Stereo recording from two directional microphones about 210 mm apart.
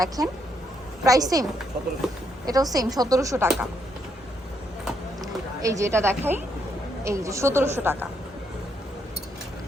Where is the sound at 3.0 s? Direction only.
15° right (ahead or behind).